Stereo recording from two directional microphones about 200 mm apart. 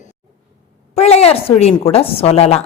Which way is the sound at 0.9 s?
30° left (ahead or behind).